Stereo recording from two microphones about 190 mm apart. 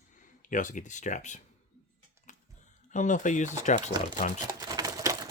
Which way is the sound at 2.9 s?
40° left (ahead or behind).